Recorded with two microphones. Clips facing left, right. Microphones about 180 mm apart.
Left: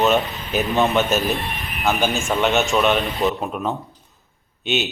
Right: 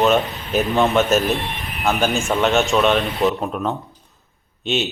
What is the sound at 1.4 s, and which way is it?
Speech, 20° right (ahead or behind).